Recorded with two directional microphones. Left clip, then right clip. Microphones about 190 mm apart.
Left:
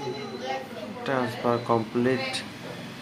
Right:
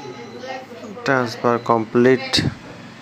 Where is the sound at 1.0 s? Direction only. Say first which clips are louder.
Right 8 dB; 40° right (ahead or behind).